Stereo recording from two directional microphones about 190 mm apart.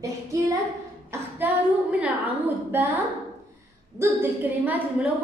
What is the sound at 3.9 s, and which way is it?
A woman's voice, 10° right (ahead or behind).